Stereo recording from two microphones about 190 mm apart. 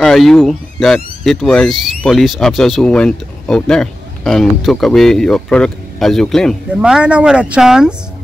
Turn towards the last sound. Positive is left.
turn(degrees=-5)  # may be behind; listen again after turning